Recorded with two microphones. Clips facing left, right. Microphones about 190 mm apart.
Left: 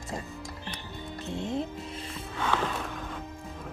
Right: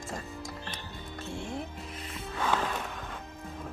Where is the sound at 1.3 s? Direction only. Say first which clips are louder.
Left 6 dB; 20° left (ahead or behind).